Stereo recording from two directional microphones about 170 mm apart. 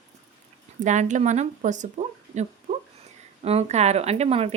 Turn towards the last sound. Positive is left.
turn(degrees=-35)  # may be behind; listen again after turning